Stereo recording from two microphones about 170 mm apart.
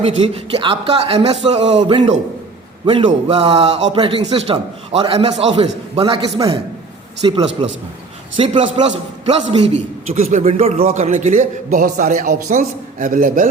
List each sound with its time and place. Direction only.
0.0 s a man's voice: 35° right (ahead or behind)
3.9 s a man's voice: 30° right (ahead or behind); by 13.5 s 50° right (ahead or behind)